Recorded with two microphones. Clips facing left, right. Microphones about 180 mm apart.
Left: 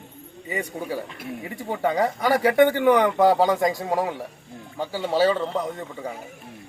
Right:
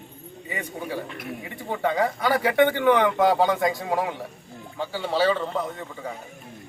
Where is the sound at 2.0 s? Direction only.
40° left (ahead or behind).